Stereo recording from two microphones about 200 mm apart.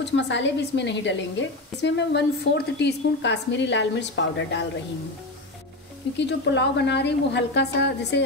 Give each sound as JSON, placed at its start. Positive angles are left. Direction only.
{"t": 0.0, "sound": "a woman's voice", "side_deg": 60}
{"t": 6.1, "sound": "a woman's voice", "side_deg": 60}